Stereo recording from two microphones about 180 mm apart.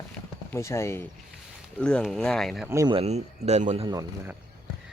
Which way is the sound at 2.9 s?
35° right (ahead or behind).